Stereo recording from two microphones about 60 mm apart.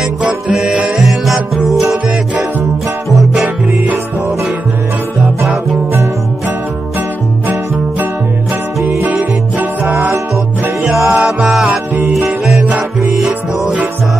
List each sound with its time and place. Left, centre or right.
0.3 s music: centre
0.7 s music: centre
1.0 s music: centre
3.1 s music: centre
8.8 s music: right
9.1 s music: right
11.1 s music: centre